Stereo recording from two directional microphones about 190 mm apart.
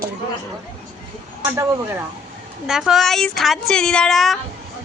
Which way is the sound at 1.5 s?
15° right (ahead or behind).